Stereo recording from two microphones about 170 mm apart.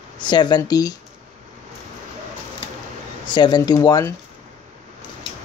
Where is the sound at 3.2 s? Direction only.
25° left (ahead or behind).